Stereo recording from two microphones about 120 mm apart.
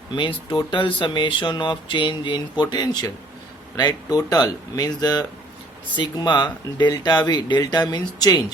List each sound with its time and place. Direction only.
0.1 s speech: 45° left (ahead or behind)